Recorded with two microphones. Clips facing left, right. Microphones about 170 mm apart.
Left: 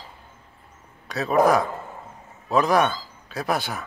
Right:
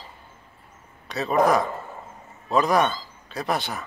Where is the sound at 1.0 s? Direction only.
Centre (ahead or behind).